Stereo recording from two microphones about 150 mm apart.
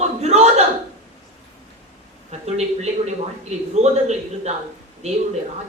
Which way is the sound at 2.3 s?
45° right (ahead or behind).